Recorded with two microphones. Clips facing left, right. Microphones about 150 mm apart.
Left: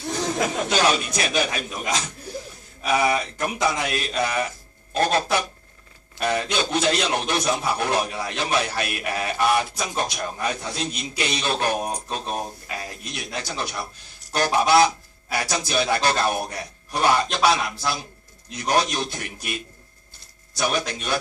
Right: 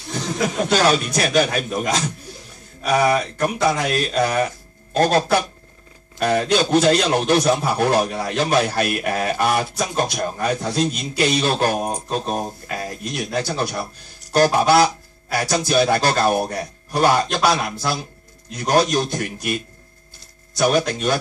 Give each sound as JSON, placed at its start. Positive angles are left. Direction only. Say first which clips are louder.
{"t": 0.7, "sound": "a man's voice", "louder": "right 6 dB", "side_deg": -40}
{"t": 20.6, "sound": "a man's voice", "louder": "right 7 dB", "side_deg": -40}